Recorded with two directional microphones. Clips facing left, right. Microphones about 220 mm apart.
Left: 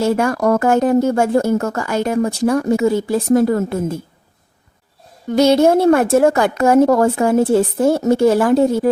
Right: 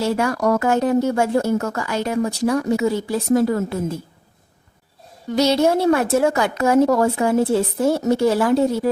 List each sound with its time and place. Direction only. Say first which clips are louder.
0.0 s speech: left 4 dB; 50° left (ahead or behind)
5.3 s speech: left 5 dB; 50° left (ahead or behind)